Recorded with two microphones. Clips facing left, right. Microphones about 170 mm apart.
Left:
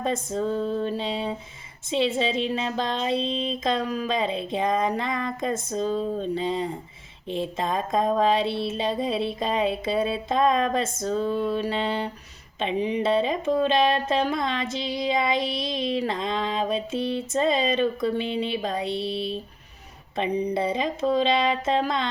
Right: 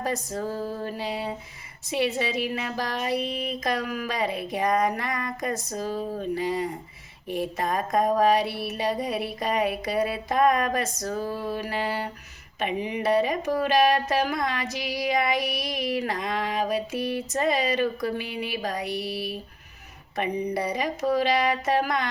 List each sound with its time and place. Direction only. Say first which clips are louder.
0.0 s speech: left 3 dB; 25° left (ahead or behind)
0.4 s a sound: left 7 dB; 5° right (ahead or behind)
0.9 s speech: left 3 dB; 25° left (ahead or behind)
11.2 s a sound: left 6 dB; 5° right (ahead or behind)
11.5 s speech: left 3 dB; 25° left (ahead or behind)
20.5 s speech: left 2 dB; 25° left (ahead or behind)